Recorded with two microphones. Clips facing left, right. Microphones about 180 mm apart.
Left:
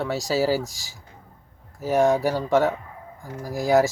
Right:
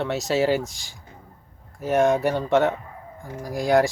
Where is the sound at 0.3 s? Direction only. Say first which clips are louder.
Right 1 dB; centre (ahead or behind).